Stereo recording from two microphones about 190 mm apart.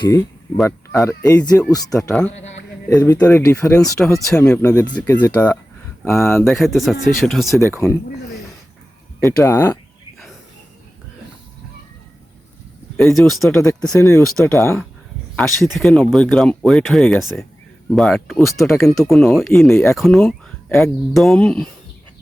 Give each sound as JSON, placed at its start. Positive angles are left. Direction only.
{"t": 0.0, "sound": "a sound", "side_deg": 15}
{"t": 0.9, "sound": "speech", "side_deg": 20}
{"t": 1.7, "sound": "speech", "side_deg": 20}
{"t": 2.0, "sound": "speech", "side_deg": 5}
{"t": 4.6, "sound": "speech", "side_deg": 15}
{"t": 6.6, "sound": "speech", "side_deg": 0}
{"t": 9.2, "sound": "speech", "side_deg": 15}
{"t": 13.0, "sound": "speech", "side_deg": 0}